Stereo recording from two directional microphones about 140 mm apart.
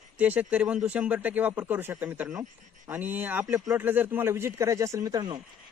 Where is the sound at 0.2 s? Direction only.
10° right (ahead or behind).